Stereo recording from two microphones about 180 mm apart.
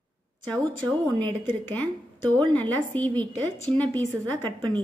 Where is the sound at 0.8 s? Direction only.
5° left (ahead or behind).